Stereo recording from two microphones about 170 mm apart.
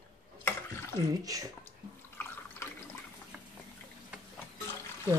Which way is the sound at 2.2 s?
15° left (ahead or behind).